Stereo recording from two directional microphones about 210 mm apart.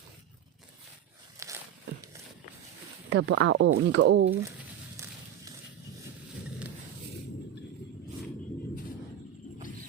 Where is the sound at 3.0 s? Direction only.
60° right (ahead or behind).